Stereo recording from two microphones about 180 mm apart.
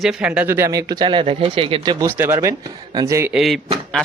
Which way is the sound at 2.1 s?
10° right (ahead or behind).